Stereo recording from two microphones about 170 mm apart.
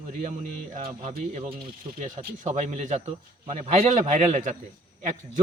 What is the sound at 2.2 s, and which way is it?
A man's voice, 45° right (ahead or behind).